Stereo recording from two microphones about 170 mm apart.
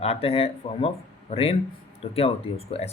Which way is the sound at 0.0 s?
35° left (ahead or behind).